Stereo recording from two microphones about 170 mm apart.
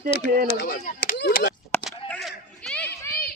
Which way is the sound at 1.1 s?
90° left.